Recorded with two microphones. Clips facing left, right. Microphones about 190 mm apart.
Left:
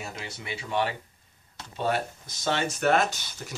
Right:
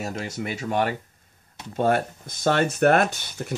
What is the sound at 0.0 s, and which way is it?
Speech, 45° right (ahead or behind).